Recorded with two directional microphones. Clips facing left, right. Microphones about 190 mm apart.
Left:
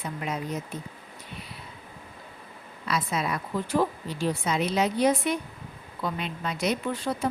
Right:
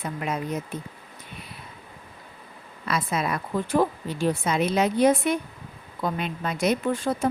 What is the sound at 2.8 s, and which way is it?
Speech, 55° right (ahead or behind).